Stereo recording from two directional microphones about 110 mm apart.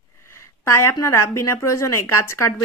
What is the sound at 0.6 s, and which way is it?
Speech, 25° left (ahead or behind).